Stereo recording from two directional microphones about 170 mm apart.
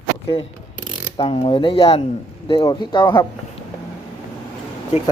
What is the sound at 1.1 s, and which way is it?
Speech, 30° left (ahead or behind).